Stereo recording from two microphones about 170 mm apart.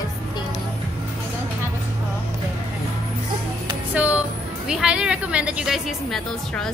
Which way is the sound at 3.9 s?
10° right (ahead or behind).